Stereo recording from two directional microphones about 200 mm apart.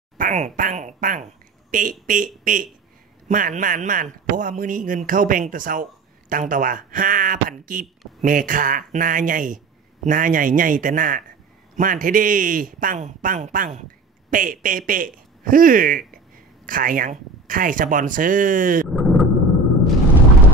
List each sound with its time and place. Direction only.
0.2 s a man's voice: 40° right (ahead or behind)
18.9 s vehicle: centre (ahead or behind)